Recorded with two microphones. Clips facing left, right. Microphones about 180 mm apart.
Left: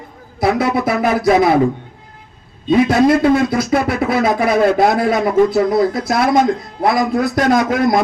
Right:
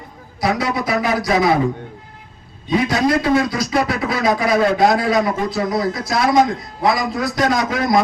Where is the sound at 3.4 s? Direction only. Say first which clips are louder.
Left 3 dB; 55° left (ahead or behind).